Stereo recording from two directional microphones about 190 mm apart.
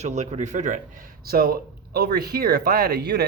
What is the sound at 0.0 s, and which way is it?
Speech, 35° right (ahead or behind).